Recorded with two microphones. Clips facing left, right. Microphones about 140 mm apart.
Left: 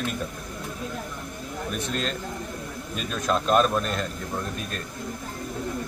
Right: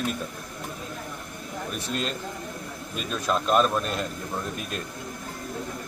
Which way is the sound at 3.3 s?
Centre (ahead or behind).